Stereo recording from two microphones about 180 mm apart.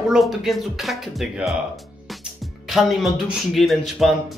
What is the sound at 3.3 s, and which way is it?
Speech, centre (ahead or behind).